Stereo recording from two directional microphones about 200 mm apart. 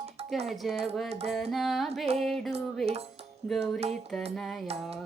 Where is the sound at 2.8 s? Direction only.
30° right (ahead or behind).